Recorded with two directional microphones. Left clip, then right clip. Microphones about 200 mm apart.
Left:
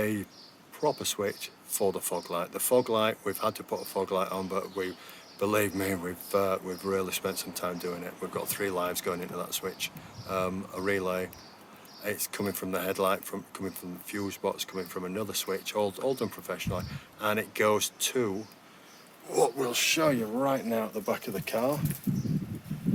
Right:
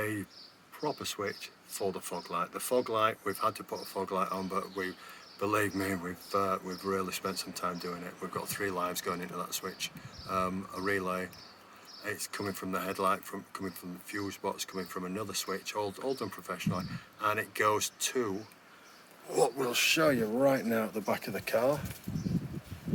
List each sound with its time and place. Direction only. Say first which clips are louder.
0.8 s speech: left 6 dB; 15° left (ahead or behind); by 21.8 s centre (ahead or behind)